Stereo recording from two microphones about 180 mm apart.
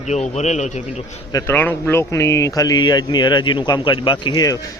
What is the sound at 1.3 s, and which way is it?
Speech, 15° left (ahead or behind).